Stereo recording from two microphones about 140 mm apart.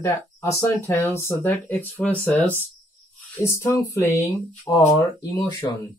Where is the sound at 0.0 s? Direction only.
20° left (ahead or behind).